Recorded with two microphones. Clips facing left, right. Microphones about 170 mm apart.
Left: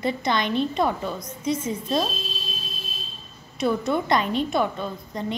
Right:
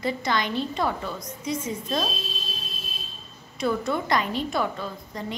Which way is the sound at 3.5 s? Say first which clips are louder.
Left 2 dB; 20° left (ahead or behind).